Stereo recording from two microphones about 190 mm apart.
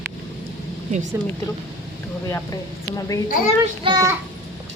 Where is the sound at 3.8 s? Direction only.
20° right (ahead or behind).